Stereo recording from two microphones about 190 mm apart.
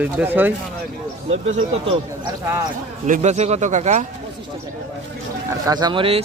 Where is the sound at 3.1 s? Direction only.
35° right (ahead or behind).